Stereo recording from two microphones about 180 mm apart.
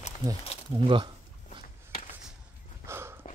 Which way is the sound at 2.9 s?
15° right (ahead or behind).